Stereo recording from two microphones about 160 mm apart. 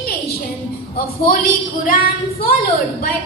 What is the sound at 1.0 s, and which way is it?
A woman's voice, 70° left (ahead or behind).